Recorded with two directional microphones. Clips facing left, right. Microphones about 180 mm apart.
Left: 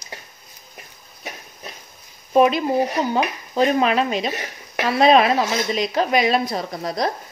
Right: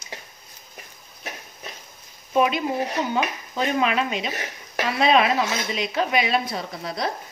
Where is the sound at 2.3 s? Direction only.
40° left (ahead or behind).